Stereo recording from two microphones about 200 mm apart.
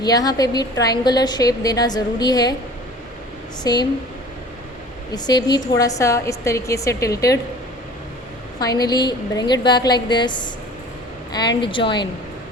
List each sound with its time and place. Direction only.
0.0 s a woman's voice: 20° left (ahead or behind)
3.6 s a woman's voice: 20° left (ahead or behind)
5.1 s a woman's voice: 20° left (ahead or behind)
8.5 s a woman's voice: 20° left (ahead or behind)
11.6 s a woman's voice: 25° left (ahead or behind)